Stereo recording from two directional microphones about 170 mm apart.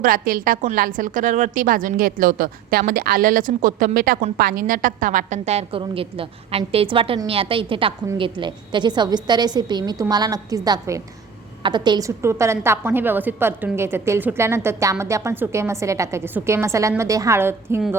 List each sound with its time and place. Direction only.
0.0 s a woman's voice: 55° right (ahead or behind); by 17.8 s 15° right (ahead or behind)